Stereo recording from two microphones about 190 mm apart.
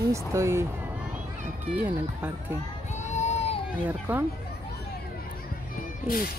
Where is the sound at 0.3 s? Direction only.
15° right (ahead or behind).